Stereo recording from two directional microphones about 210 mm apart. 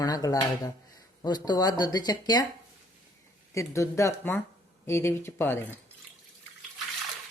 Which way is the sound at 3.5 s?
15° left (ahead or behind).